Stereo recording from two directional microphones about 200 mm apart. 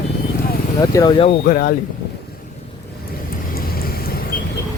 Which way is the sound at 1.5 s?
45° left (ahead or behind).